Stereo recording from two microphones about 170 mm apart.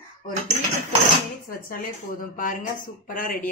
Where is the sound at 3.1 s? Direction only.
55° left (ahead or behind).